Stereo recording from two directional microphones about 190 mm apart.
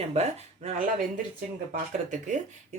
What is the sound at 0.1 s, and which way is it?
Speech, 35° right (ahead or behind).